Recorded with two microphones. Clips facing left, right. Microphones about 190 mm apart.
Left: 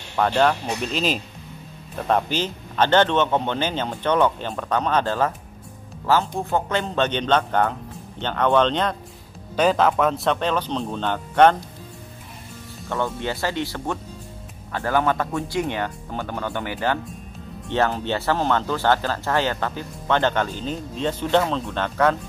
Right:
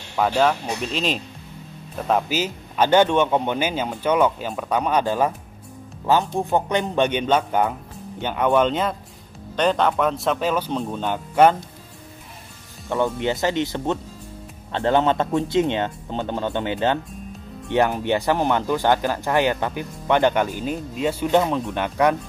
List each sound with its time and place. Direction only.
0.1 s speech: 5° right (ahead or behind)
12.8 s speech: 15° right (ahead or behind)